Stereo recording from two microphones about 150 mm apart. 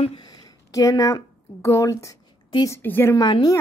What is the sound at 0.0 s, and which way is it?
A woman's voice, 30° left (ahead or behind).